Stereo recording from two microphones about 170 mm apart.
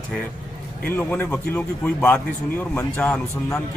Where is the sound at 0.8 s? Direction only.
10° left (ahead or behind).